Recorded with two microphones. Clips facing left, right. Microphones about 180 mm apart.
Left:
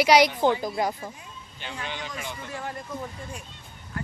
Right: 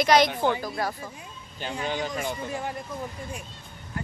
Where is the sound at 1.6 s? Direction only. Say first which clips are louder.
Right 6 dB; 40° right (ahead or behind).